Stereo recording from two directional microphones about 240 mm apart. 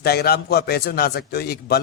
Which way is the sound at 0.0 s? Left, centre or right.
Left.